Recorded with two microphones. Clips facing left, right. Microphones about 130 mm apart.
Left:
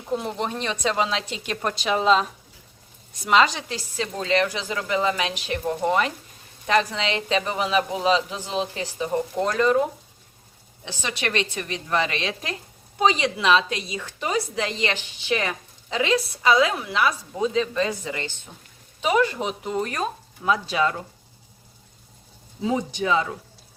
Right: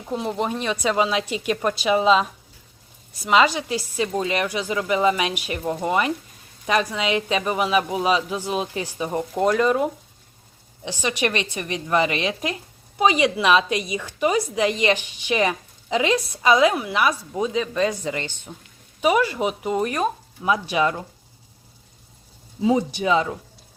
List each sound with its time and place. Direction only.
0.1 s a woman's voice: centre (ahead or behind)
10.8 s a woman's voice: 15° right (ahead or behind)
22.6 s a woman's voice: 10° right (ahead or behind)